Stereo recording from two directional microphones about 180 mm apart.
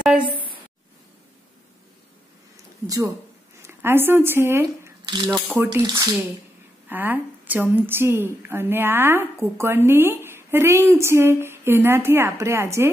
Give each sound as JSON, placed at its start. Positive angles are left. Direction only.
{"t": 3.6, "sound": "a woman's voice", "side_deg": -15}